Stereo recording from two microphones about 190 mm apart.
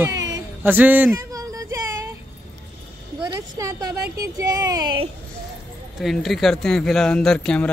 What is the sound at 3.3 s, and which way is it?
Speech, 15° right (ahead or behind).